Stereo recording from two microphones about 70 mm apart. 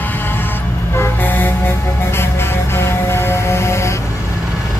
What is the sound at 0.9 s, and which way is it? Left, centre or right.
Vehicle, left.